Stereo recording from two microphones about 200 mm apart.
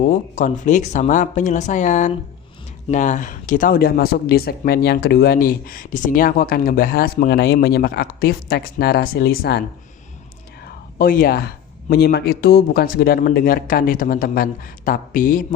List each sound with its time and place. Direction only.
0.1 s speech: 40° left (ahead or behind)
10.9 s speech: 45° left (ahead or behind)